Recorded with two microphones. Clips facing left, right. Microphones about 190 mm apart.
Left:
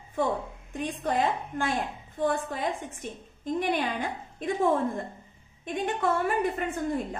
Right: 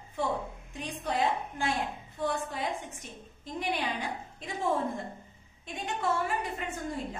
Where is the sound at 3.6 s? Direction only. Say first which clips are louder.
Left 4 dB; 55° left (ahead or behind).